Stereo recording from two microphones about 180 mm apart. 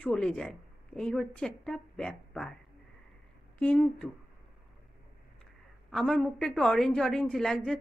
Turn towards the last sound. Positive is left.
turn(degrees=5)  # may be behind; listen again after turning